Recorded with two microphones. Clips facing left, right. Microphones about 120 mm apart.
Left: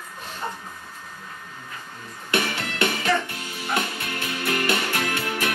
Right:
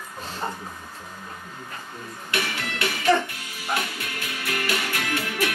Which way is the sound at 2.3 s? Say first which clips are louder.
Left 4 dB; 30° left (ahead or behind).